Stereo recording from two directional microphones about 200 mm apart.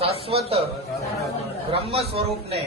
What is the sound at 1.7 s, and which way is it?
Speech, 30° right (ahead or behind).